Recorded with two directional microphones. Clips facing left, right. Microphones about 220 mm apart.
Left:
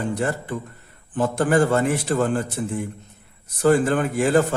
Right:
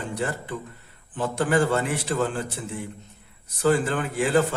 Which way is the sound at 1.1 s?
45° left (ahead or behind).